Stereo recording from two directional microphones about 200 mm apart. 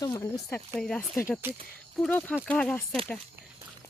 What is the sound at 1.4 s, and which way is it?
Speech, 10° right (ahead or behind).